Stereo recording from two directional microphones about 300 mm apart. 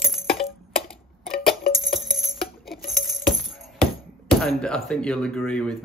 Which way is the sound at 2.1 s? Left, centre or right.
Centre.